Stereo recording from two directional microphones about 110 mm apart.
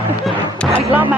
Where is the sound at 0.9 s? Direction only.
15° right (ahead or behind).